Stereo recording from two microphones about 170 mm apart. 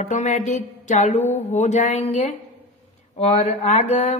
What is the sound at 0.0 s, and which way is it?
Speech, 45° left (ahead or behind).